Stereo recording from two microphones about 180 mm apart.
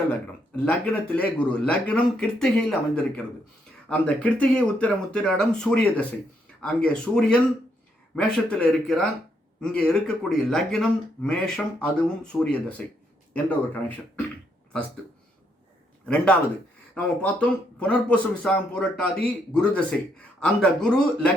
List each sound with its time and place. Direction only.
0.1 s speech: 5° left (ahead or behind)
16.0 s speech: 5° left (ahead or behind)